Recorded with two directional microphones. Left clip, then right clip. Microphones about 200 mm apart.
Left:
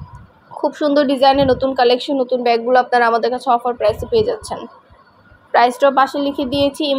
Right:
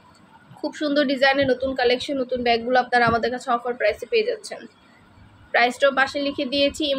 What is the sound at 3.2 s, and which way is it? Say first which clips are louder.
A woman's voice: left 7 dB; 10° left (ahead or behind).